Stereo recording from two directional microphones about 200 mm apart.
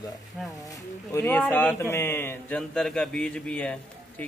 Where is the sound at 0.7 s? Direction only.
10° left (ahead or behind).